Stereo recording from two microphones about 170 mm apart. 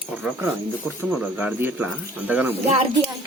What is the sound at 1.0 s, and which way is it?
Speech, 10° right (ahead or behind).